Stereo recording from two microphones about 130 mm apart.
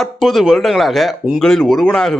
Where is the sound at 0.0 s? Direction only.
Centre (ahead or behind).